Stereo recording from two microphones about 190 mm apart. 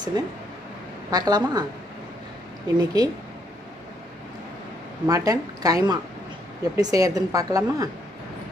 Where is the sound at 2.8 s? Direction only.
20° right (ahead or behind).